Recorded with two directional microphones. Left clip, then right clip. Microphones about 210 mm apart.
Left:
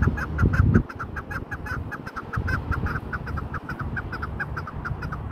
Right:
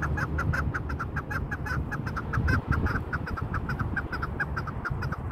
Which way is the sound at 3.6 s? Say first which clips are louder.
Even; 10° right (ahead or behind).